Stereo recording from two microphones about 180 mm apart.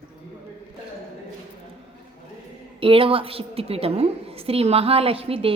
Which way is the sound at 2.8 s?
30° right (ahead or behind).